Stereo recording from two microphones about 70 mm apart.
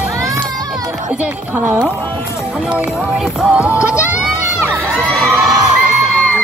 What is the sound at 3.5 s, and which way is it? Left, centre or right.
Music, centre.